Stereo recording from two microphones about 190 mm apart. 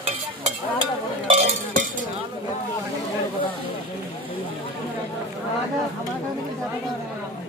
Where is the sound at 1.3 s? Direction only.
35° right (ahead or behind).